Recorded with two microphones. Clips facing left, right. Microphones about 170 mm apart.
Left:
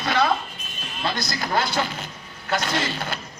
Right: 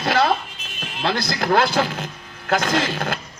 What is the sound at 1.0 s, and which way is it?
A man's voice, 60° right (ahead or behind).